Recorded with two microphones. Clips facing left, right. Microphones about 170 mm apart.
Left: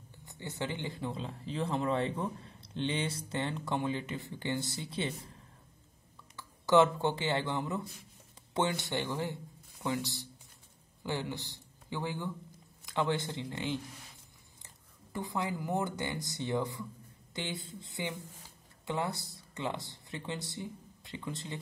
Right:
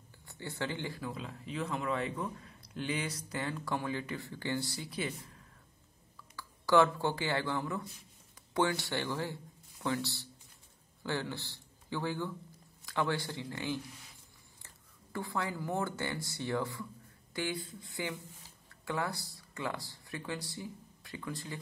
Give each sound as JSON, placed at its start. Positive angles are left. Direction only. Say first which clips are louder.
{"t": 0.2, "sound": "speech", "louder": "even", "side_deg": 20}
{"t": 6.3, "sound": "a man's voice", "louder": "left 1 dB", "side_deg": 20}
{"t": 15.1, "sound": "speech", "louder": "left 1 dB", "side_deg": 20}